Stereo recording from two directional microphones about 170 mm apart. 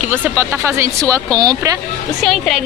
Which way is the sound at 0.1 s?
15° right (ahead or behind).